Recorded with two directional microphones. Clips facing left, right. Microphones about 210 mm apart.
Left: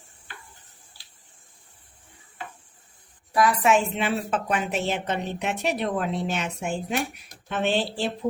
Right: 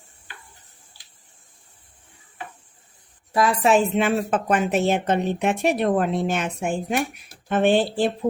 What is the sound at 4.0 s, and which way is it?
Speech, 50° right (ahead or behind).